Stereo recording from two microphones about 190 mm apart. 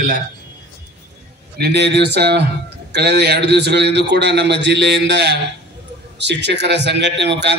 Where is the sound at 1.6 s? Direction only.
60° right (ahead or behind).